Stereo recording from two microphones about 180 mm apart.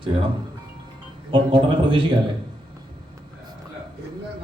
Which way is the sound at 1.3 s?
25° right (ahead or behind).